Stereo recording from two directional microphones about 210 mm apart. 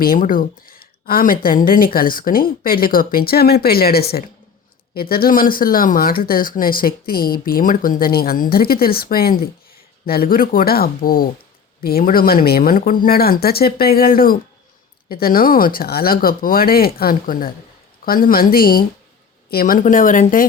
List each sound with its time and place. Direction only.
0.0 s speech: 40° left (ahead or behind)